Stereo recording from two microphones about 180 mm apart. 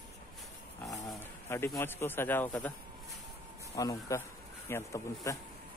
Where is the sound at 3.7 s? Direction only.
20° left (ahead or behind).